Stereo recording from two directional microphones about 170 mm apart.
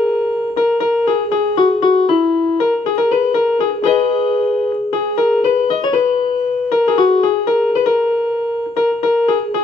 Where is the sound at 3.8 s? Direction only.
30° left (ahead or behind).